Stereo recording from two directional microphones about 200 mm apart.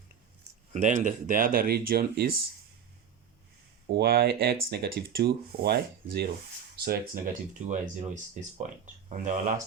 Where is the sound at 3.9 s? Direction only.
50° right (ahead or behind).